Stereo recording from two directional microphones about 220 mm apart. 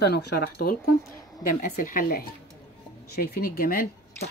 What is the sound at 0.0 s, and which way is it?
Speech, 45° left (ahead or behind).